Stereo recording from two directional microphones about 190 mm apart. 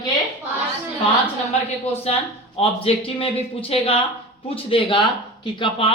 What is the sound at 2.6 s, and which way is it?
A man's voice, 30° left (ahead or behind).